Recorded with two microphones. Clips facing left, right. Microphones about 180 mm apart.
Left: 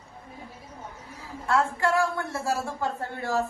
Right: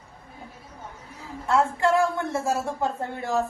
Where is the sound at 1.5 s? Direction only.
20° right (ahead or behind).